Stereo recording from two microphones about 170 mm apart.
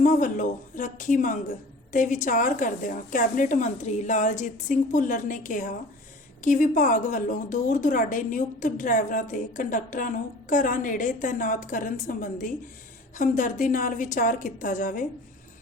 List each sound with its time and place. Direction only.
0.0 s a woman's voice: 50° left (ahead or behind)